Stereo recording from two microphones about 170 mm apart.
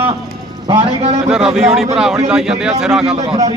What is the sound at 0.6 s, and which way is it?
Speech, 30° right (ahead or behind).